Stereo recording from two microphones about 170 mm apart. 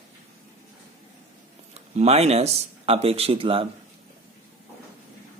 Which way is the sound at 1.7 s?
40° right (ahead or behind).